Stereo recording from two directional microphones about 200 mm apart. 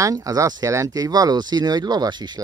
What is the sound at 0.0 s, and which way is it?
Speech, 15° right (ahead or behind).